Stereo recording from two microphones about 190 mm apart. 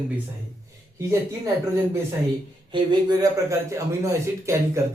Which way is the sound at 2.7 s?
25° right (ahead or behind).